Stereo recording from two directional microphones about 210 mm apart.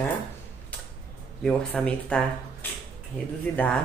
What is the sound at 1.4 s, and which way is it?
A woman's voice, 5° left (ahead or behind).